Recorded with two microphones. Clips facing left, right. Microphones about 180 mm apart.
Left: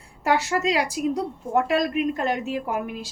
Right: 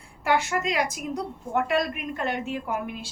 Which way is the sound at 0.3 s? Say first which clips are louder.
Left 3 dB; 35° left (ahead or behind).